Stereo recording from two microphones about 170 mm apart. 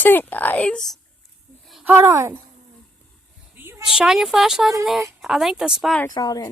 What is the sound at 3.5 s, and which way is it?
A woman's voice, 10° right (ahead or behind).